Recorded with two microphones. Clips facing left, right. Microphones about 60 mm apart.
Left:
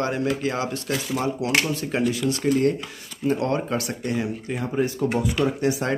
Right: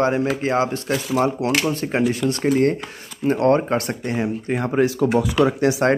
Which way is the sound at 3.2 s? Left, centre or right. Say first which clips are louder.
Right 6 dB; right.